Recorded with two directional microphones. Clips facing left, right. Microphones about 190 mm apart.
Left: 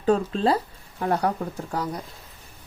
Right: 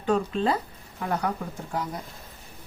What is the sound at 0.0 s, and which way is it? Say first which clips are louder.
Speech: left 3 dB; 35° left (ahead or behind).